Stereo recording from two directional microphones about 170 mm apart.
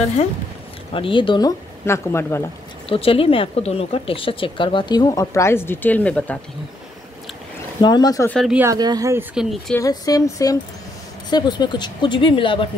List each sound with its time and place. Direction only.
0.9 s speech: 30° left (ahead or behind)
1.9 s speech: 15° left (ahead or behind)
2.9 s speech: 35° left (ahead or behind); by 6.4 s 10° left (ahead or behind)
7.8 s speech: 25° left (ahead or behind)
8.3 s speech: 5° left (ahead or behind)
8.5 s a woman's voice: 20° right (ahead or behind)
9.3 s speech: centre (ahead or behind)
9.8 s speech: 20° left (ahead or behind)